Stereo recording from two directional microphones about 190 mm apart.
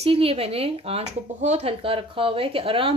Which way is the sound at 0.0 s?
30° right (ahead or behind).